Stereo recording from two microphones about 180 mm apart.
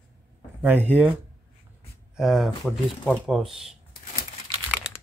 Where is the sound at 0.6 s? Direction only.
10° right (ahead or behind).